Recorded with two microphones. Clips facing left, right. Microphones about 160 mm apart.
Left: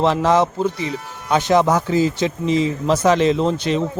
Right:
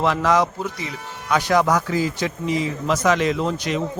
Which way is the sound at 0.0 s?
30° left (ahead or behind).